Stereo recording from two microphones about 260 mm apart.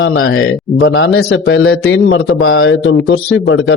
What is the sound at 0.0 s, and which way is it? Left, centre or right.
A man's voice, left.